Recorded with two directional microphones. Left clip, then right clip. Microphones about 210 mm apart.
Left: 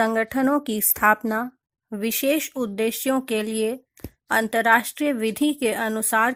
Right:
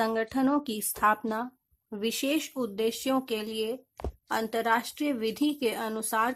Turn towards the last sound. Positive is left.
turn(degrees=35)  # may be behind; listen again after turning